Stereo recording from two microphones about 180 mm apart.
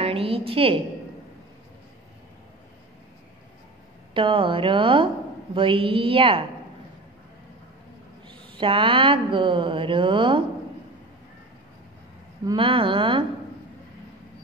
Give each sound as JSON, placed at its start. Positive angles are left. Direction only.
{"t": 0.0, "sound": "a woman's voice", "side_deg": -30}
{"t": 4.1, "sound": "a woman's voice", "side_deg": -30}
{"t": 8.5, "sound": "a woman's voice", "side_deg": -30}
{"t": 12.4, "sound": "a woman's voice", "side_deg": -30}